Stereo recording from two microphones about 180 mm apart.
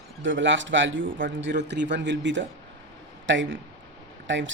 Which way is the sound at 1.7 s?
70° right (ahead or behind).